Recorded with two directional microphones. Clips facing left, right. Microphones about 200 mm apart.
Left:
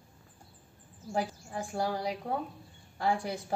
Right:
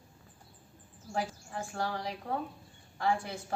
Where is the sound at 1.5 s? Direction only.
10° left (ahead or behind).